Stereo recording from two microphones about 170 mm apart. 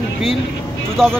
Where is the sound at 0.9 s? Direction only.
5° left (ahead or behind).